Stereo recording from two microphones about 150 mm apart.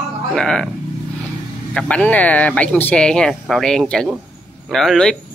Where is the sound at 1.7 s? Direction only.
5° left (ahead or behind).